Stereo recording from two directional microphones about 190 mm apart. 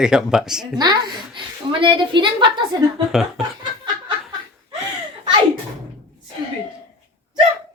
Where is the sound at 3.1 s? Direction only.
Centre (ahead or behind).